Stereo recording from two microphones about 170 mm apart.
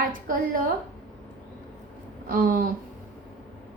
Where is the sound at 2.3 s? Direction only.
55° right (ahead or behind).